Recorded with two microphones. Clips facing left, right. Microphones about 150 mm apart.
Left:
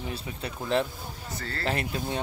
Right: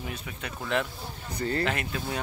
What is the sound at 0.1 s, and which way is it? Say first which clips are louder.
Speech: left 2 dB; 30° left (ahead or behind).